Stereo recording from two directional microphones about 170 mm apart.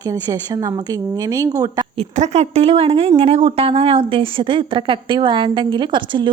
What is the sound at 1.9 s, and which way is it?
A woman's voice, 40° right (ahead or behind).